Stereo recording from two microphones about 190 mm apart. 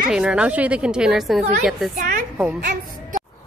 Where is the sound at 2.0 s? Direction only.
45° right (ahead or behind).